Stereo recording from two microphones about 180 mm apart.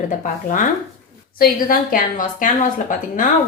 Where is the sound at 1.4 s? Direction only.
50° left (ahead or behind).